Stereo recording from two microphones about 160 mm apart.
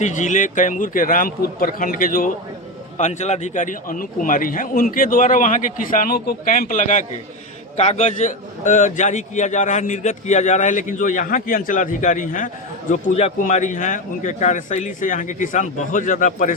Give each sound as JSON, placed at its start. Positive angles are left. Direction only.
{"t": 0.0, "sound": "a man's voice", "side_deg": 50}
{"t": 3.0, "sound": "a man's voice", "side_deg": 45}